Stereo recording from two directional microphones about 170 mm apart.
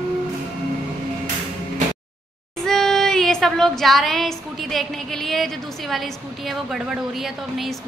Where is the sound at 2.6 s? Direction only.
Centre (ahead or behind).